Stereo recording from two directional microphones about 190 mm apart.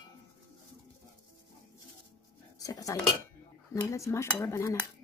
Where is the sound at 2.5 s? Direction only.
20° left (ahead or behind).